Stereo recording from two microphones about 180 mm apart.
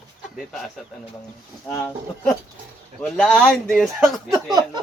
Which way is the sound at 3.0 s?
Centre (ahead or behind).